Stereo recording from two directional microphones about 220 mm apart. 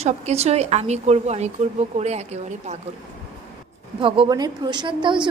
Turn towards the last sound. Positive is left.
turn(degrees=-20)  # may be behind; listen again after turning